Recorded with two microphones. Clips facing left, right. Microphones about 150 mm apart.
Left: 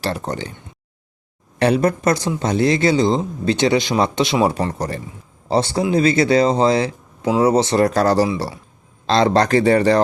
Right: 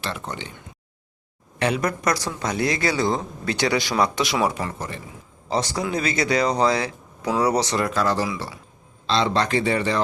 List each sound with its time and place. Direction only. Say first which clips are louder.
0.0 s speech: left 7 dB; 40° left (ahead or behind)
1.5 s speech: left 7 dB; 35° left (ahead or behind)
4.5 s a man's voice: left 7 dB; 35° left (ahead or behind)